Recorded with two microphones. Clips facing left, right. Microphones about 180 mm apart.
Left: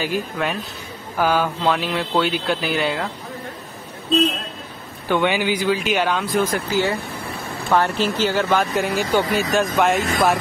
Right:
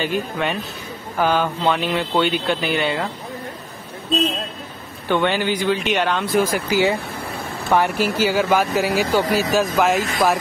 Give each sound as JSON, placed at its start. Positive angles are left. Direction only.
{"t": 0.0, "sound": "speech", "side_deg": 0}
{"t": 5.0, "sound": "speech", "side_deg": 10}